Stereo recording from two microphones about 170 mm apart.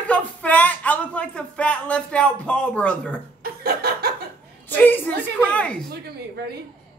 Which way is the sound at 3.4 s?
65° right (ahead or behind).